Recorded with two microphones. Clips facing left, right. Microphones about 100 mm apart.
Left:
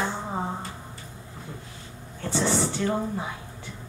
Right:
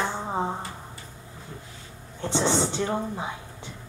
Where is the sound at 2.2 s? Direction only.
20° right (ahead or behind).